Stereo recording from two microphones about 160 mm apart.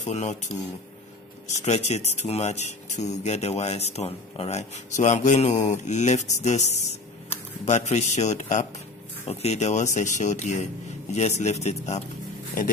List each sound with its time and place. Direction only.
0.0 s speech: 45° left (ahead or behind)